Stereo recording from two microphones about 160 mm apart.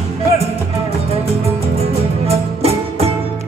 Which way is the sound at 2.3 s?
40° right (ahead or behind).